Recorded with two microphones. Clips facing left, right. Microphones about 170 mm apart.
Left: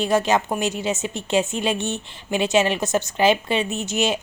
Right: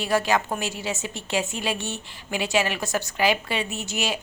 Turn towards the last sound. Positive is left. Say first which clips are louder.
# left 6 dB
turn(degrees=20)  # may be behind; listen again after turning